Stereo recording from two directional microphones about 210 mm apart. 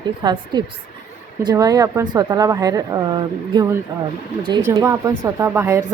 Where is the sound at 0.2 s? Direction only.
20° right (ahead or behind).